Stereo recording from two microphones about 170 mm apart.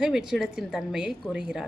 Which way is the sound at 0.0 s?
5° right (ahead or behind).